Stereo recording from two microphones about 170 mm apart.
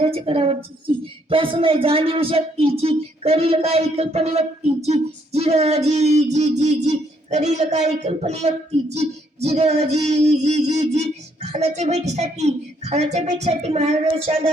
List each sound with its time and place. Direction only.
0.0 s a woman's voice: 35° right (ahead or behind)